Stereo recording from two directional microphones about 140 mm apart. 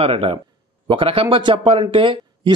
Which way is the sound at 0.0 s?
40° right (ahead or behind).